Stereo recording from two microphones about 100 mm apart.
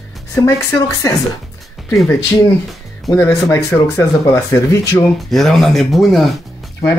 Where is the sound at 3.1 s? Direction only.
25° left (ahead or behind).